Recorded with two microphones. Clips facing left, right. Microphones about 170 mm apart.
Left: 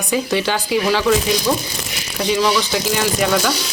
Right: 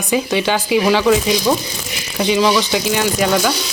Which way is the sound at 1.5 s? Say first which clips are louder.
Right 3 dB; 20° right (ahead or behind).